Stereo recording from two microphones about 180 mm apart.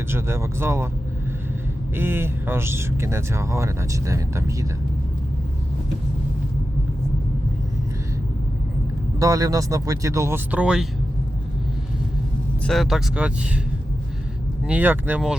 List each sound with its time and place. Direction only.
0.1 s speech: 15° right (ahead or behind)
2.0 s speech: 10° right (ahead or behind)
9.1 s speech: 20° right (ahead or behind)
12.6 s speech: centre (ahead or behind)
14.7 s speech: 10° right (ahead or behind)